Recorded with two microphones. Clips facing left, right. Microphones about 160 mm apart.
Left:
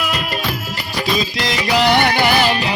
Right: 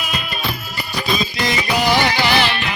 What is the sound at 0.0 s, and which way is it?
Music, 80° left.